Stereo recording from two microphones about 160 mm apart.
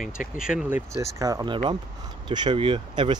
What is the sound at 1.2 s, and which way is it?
Speech, 20° right (ahead or behind).